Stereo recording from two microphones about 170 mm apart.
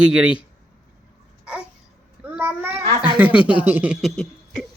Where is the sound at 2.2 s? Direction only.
10° right (ahead or behind).